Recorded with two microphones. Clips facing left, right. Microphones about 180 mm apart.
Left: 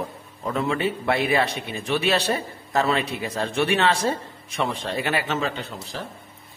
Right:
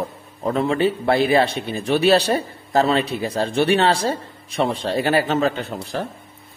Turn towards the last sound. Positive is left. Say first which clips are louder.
# right 7 dB
turn(degrees=-45)  # may be behind; listen again after turning